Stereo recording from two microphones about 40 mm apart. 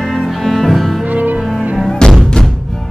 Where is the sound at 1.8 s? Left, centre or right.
Centre.